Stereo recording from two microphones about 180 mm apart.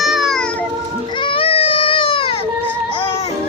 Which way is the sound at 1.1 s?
30° left (ahead or behind).